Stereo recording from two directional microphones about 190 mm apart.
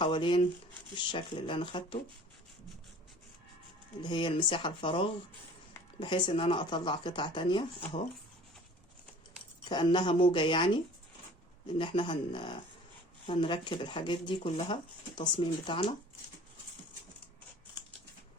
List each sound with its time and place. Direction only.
0.0 s speech: 25° left (ahead or behind)
4.0 s speech: 25° left (ahead or behind)
9.6 s speech: 25° left (ahead or behind)